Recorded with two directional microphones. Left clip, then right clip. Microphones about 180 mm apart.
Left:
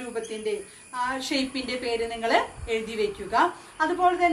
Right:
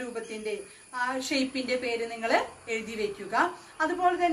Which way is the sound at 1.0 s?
15° right (ahead or behind).